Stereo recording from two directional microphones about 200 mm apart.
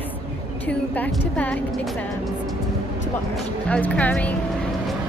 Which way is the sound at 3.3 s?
5° left (ahead or behind).